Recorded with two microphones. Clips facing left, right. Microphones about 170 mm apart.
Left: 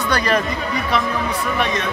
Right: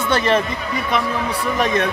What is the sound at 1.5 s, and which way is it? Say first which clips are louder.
Speech: right 5 dB; 45° right (ahead or behind).